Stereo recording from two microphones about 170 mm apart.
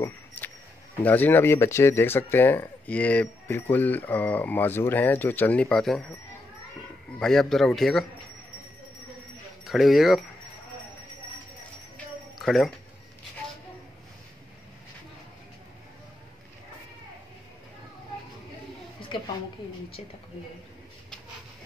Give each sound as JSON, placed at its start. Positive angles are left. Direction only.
{"t": 0.0, "sound": "speech", "side_deg": 10}
{"t": 7.2, "sound": "a man's voice", "side_deg": 5}
{"t": 9.7, "sound": "a man's voice", "side_deg": 0}
{"t": 12.4, "sound": "speech", "side_deg": 0}
{"t": 19.1, "sound": "a woman's voice", "side_deg": 30}